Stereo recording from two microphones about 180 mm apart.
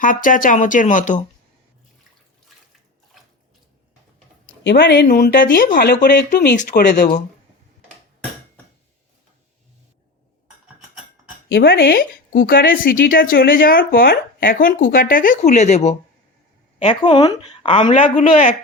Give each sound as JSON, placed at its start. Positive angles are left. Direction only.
{"t": 0.0, "sound": "a woman's voice", "side_deg": 50}
{"t": 3.1, "sound": "water", "side_deg": 0}
{"t": 4.6, "sound": "speech", "side_deg": 70}
{"t": 5.5, "sound": "speech", "side_deg": 50}
{"t": 11.5, "sound": "a woman's voice", "side_deg": 55}
{"t": 16.8, "sound": "a woman's voice", "side_deg": 25}
{"t": 18.1, "sound": "speech", "side_deg": 40}